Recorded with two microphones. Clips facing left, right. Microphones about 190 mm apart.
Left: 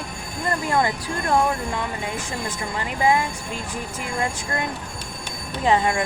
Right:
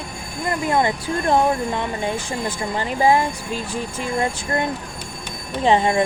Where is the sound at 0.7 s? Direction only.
25° right (ahead or behind).